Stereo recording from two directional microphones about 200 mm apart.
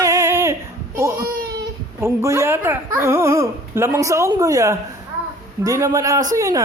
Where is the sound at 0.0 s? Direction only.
15° right (ahead or behind).